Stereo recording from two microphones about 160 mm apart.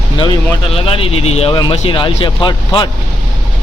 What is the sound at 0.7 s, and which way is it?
Speech, 35° left (ahead or behind).